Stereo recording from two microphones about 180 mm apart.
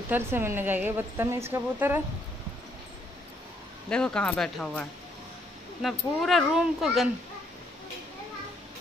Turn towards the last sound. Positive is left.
turn(degrees=0)  # may be behind; listen again after turning